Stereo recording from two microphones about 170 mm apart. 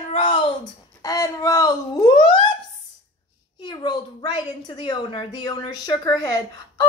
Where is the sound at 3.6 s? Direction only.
25° left (ahead or behind).